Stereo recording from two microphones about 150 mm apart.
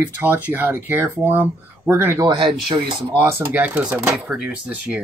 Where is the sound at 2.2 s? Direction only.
30° right (ahead or behind).